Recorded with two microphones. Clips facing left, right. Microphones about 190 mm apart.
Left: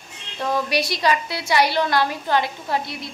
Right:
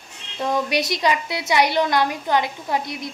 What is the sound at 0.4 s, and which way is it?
A woman's voice, 20° right (ahead or behind).